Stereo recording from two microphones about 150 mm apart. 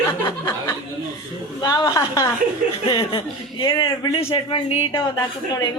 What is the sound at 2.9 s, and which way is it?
A man's voice, 35° left (ahead or behind).